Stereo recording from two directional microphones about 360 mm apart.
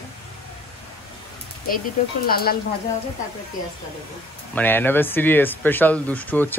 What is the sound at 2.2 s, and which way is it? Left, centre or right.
Speech, left.